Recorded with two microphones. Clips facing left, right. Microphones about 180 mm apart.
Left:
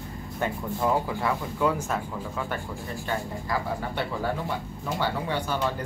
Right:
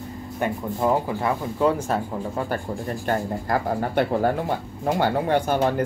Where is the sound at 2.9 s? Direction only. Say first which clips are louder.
Right 6 dB; 50° right (ahead or behind).